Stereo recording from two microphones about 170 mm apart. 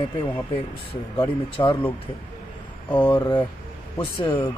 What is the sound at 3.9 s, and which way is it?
Speech, 30° left (ahead or behind).